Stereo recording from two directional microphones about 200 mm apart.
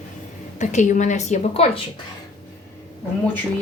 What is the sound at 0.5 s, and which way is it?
A woman's voice, 35° left (ahead or behind).